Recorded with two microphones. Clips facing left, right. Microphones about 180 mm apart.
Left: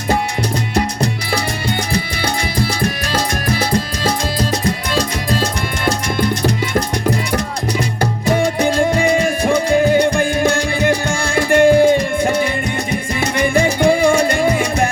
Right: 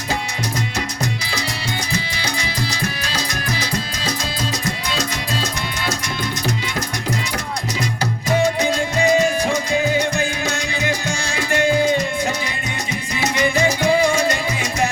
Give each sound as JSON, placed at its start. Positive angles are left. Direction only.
{"t": 3.1, "sound": "music", "side_deg": 55}
{"t": 8.4, "sound": "music", "side_deg": 55}